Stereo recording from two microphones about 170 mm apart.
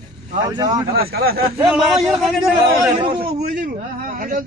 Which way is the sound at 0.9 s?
65° right (ahead or behind).